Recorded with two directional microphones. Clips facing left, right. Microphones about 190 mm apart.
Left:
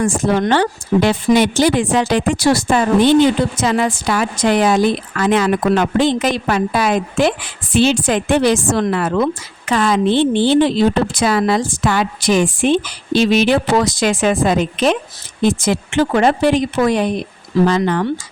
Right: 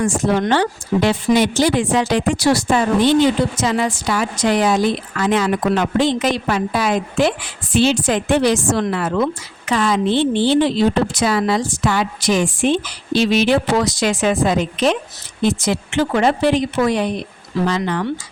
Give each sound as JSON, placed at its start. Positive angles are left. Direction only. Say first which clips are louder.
{"t": 0.0, "sound": "a woman's voice", "louder": "left 2 dB", "side_deg": 55}